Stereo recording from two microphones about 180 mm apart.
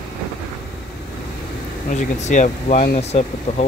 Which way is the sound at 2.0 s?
40° left (ahead or behind).